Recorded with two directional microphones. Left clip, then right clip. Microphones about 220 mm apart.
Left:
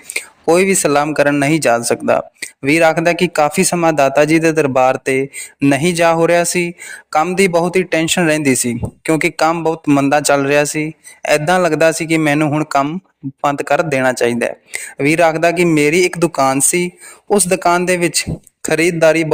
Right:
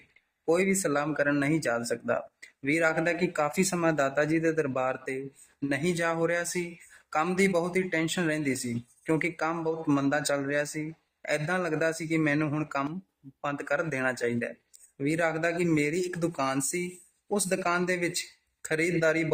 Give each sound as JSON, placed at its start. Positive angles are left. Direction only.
{"t": 0.4, "sound": "speech", "side_deg": 40}